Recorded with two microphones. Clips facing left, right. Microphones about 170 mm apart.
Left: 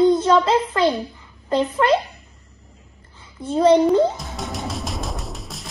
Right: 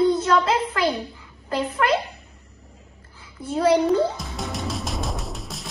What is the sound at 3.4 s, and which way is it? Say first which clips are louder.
Speech: left 4 dB; 30° left (ahead or behind).